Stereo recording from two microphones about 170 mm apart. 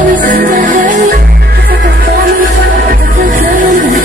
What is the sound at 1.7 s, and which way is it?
Music, 60° right (ahead or behind).